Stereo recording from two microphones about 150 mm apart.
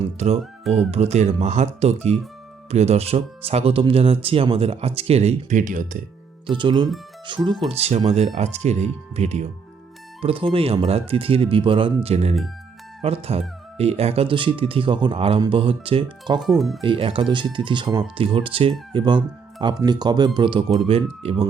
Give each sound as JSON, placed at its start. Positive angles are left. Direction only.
{"t": 0.9, "sound": "speech", "side_deg": -45}
{"t": 6.5, "sound": "speech", "side_deg": -35}
{"t": 10.2, "sound": "speech", "side_deg": -35}
{"t": 16.4, "sound": "speech", "side_deg": 0}
{"t": 16.8, "sound": "speech", "side_deg": -35}